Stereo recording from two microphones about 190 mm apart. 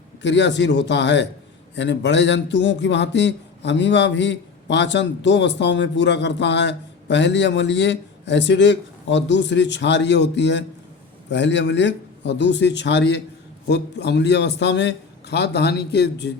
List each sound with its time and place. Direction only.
0.2 s a man's voice: 70° left (ahead or behind)